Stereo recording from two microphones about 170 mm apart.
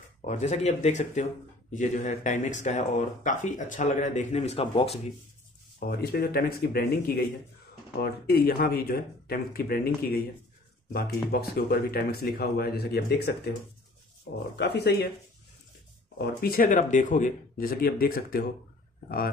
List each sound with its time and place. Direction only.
0.2 s speech: 45° left (ahead or behind)
5.9 s speech: 65° left (ahead or behind)
10.9 s speech: 65° left (ahead or behind)
14.6 s speech: 70° left (ahead or behind)
16.2 s speech: 65° left (ahead or behind)